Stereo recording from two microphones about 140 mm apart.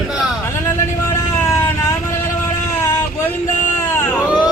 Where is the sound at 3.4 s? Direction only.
65° left (ahead or behind).